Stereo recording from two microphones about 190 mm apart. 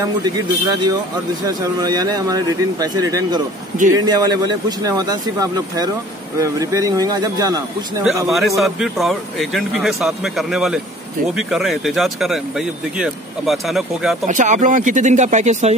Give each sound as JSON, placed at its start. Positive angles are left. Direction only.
{"t": 0.0, "sound": "speech", "side_deg": -20}
{"t": 8.3, "sound": "speech", "side_deg": 0}
{"t": 14.2, "sound": "speech", "side_deg": -40}